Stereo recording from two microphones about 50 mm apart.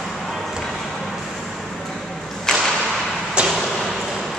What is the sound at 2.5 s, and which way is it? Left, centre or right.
Whip, centre.